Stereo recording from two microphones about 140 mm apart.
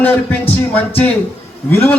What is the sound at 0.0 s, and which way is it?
A man's voice, 10° left (ahead or behind).